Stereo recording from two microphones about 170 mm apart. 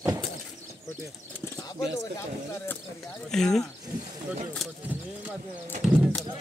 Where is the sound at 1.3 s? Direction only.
15° left (ahead or behind); by 6.2 s 5° right (ahead or behind).